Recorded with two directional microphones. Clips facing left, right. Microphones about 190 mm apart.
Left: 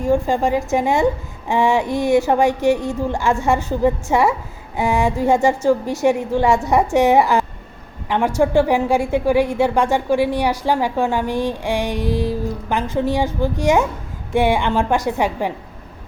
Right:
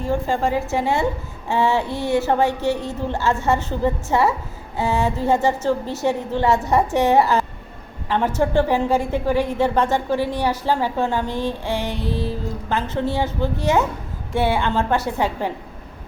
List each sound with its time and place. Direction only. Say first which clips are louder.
0.0 s a woman's voice: left 4 dB; 15° left (ahead or behind)